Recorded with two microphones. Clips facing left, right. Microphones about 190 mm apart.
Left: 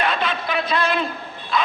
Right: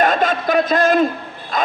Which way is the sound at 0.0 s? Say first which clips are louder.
Right 7 dB; 45° right (ahead or behind).